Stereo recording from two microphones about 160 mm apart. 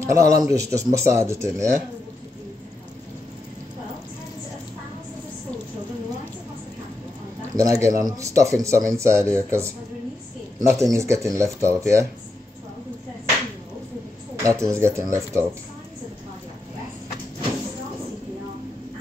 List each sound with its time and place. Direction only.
0.0 s speech: 20° right (ahead or behind)
7.5 s speech: 20° right (ahead or behind)
14.4 s speech: 20° right (ahead or behind)